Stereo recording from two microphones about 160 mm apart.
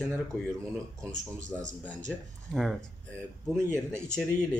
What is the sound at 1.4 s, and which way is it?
Speech, 50° right (ahead or behind).